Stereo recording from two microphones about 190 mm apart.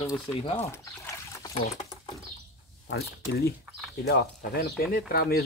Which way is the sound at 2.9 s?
55° left (ahead or behind).